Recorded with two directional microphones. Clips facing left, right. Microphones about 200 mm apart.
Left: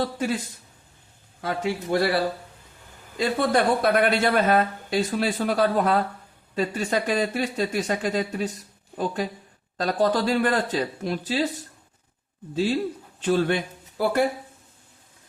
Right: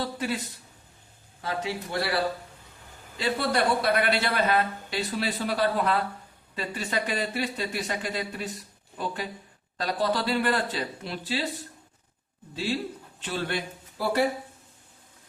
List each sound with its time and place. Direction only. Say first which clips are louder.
0.0 s speech: left 4 dB; 45° left (ahead or behind)
1.4 s speech: left 4 dB; 50° left (ahead or behind)
3.2 s speech: left 4 dB; 50° left (ahead or behind)
9.7 s speech: left 5 dB; 45° left (ahead or behind)
12.5 s speech: left 6 dB; 40° left (ahead or behind)